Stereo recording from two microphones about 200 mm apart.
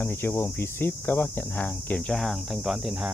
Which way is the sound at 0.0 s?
10° left (ahead or behind).